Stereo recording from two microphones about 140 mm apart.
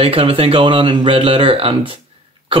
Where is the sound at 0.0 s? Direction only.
45° right (ahead or behind).